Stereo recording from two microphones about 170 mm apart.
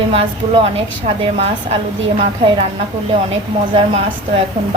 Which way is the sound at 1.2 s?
35° right (ahead or behind).